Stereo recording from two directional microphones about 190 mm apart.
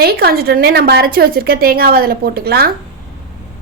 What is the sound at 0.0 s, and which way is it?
A woman's voice, 55° right (ahead or behind).